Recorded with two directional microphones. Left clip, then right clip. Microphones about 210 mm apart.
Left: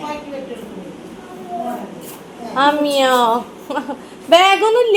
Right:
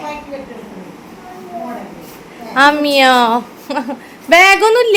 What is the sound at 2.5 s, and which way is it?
A woman's voice, 30° right (ahead or behind).